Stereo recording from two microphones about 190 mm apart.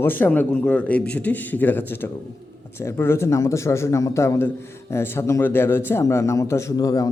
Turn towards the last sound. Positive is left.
turn(degrees=20)  # may be behind; listen again after turning